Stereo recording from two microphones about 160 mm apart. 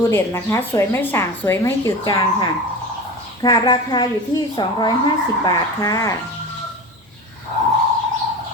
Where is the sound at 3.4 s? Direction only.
25° left (ahead or behind).